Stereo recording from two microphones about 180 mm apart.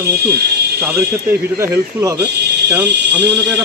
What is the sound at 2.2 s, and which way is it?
Speech, 65° right (ahead or behind).